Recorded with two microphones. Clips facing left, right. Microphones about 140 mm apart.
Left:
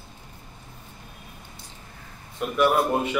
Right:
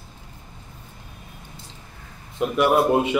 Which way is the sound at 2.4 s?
20° right (ahead or behind).